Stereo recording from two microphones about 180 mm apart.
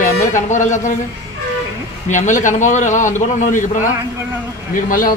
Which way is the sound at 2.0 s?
45° left (ahead or behind).